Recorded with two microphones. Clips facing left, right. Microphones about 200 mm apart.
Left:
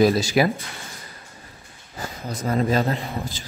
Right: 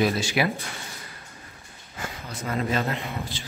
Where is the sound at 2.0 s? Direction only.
40° left (ahead or behind).